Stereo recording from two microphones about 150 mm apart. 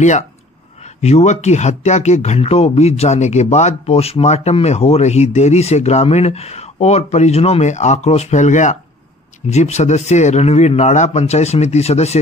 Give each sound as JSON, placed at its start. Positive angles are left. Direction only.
{"t": 1.0, "sound": "speech", "side_deg": 50}